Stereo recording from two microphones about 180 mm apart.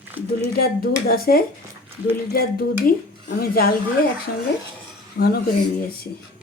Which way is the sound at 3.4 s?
55° left (ahead or behind).